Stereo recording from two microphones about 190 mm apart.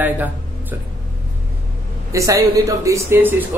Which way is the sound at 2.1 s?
15° right (ahead or behind).